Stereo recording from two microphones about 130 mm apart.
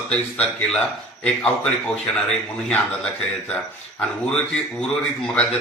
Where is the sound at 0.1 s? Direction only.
10° left (ahead or behind).